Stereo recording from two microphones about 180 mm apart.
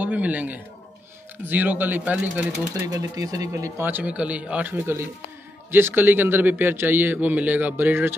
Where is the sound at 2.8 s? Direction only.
20° right (ahead or behind).